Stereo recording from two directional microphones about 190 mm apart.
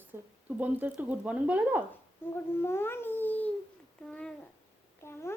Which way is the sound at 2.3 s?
10° left (ahead or behind).